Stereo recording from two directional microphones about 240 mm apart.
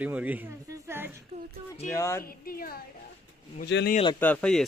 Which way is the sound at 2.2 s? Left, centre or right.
Left.